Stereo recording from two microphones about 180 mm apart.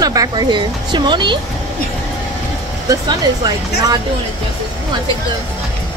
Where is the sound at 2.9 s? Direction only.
20° right (ahead or behind).